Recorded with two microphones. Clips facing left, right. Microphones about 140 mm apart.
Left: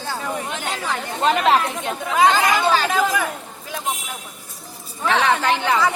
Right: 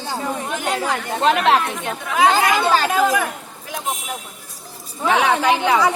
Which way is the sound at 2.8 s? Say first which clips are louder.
Right 2 dB; 10° right (ahead or behind).